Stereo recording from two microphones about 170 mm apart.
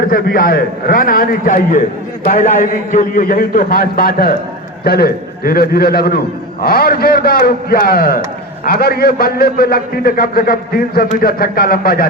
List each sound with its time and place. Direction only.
0.1 s a man's voice: 55° left (ahead or behind)